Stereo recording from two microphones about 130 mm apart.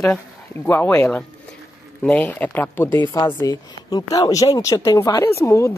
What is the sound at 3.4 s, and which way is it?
Speech, 25° left (ahead or behind).